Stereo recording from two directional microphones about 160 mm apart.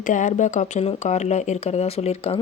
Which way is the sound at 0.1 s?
50° left (ahead or behind).